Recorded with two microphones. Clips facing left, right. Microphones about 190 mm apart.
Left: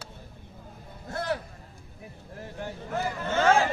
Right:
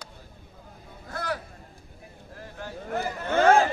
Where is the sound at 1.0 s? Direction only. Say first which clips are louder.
Left 2 dB; 25° left (ahead or behind).